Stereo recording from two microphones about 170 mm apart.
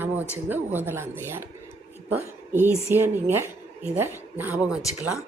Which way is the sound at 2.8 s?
15° right (ahead or behind).